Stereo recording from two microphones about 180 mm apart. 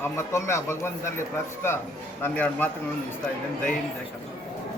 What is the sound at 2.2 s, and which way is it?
Speech, 10° left (ahead or behind).